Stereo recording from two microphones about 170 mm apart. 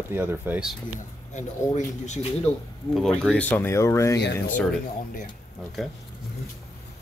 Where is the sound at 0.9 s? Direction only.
45° left (ahead or behind).